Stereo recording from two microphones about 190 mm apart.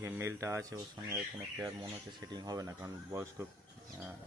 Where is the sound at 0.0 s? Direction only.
15° right (ahead or behind).